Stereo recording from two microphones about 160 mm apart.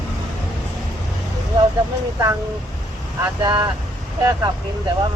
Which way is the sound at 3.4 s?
30° right (ahead or behind).